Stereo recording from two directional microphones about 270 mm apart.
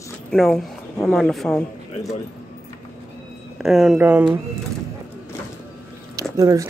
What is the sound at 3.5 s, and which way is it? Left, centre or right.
Speech, centre.